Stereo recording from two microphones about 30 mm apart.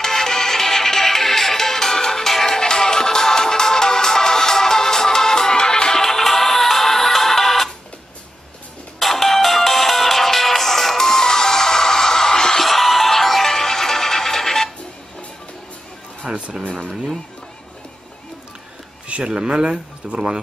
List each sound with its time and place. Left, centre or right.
0.0 s music: centre
9.0 s music: centre
12.6 s music: centre
16.3 s a sound: right
19.2 s speech: right